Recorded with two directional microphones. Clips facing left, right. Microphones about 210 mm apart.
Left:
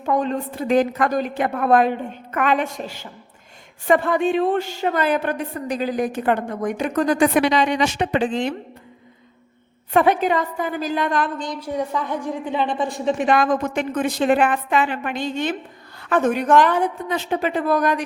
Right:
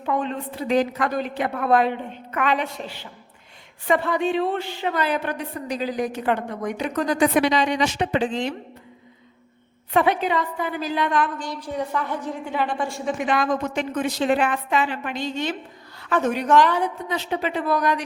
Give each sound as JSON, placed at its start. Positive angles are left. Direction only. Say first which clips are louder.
{"t": 0.0, "sound": "a woman's voice", "louder": "left 4 dB", "side_deg": 40}
{"t": 9.9, "sound": "a woman's voice", "louder": "left 3 dB", "side_deg": 50}
{"t": 11.3, "sound": "a woman's voice", "louder": "left 3 dB", "side_deg": 15}
{"t": 13.3, "sound": "a woman's voice", "louder": "left 2 dB", "side_deg": 50}